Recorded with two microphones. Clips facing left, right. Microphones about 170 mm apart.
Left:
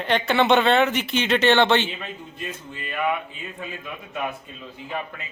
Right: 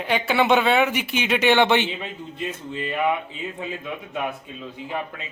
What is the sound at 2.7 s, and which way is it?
Speech, 25° right (ahead or behind).